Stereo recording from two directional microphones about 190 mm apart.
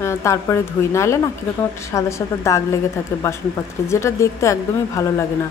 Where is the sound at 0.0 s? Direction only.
15° left (ahead or behind).